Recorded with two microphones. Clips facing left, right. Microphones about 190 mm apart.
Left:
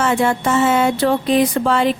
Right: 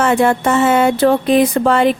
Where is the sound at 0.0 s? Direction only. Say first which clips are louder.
Right 4 dB; 60° right (ahead or behind).